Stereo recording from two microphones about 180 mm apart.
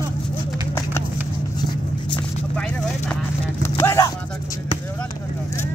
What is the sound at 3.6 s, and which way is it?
Vehicle, 15° left (ahead or behind).